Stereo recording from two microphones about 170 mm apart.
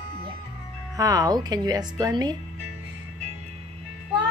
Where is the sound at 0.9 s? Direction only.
20° right (ahead or behind).